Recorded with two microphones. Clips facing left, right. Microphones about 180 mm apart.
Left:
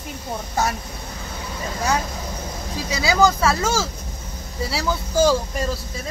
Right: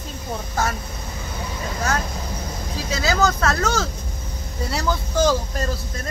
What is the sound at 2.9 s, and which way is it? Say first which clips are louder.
Speech: left 3 dB; 10° left (ahead or behind).